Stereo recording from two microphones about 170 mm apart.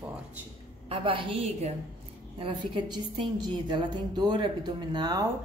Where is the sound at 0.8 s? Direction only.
30° right (ahead or behind).